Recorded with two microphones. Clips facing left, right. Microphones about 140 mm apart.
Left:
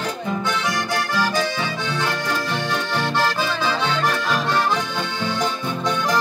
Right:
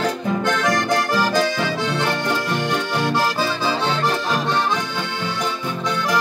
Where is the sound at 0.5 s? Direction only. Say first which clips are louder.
Right 6 dB; 50° right (ahead or behind).